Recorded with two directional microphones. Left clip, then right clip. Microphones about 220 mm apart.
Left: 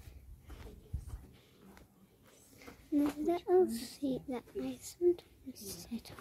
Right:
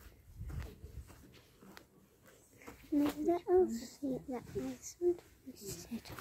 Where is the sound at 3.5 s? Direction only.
10° left (ahead or behind).